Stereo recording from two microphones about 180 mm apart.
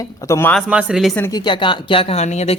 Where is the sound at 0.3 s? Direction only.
10° left (ahead or behind).